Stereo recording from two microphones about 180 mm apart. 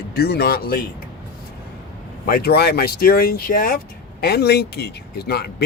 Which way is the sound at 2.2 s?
55° left (ahead or behind).